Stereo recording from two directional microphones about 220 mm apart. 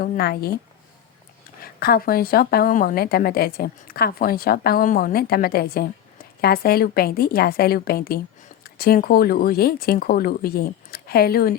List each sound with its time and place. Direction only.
0.0 s a woman's voice: 45° left (ahead or behind)
1.6 s a woman's voice: 45° left (ahead or behind)